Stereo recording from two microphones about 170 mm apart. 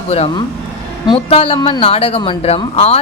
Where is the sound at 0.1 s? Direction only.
35° left (ahead or behind).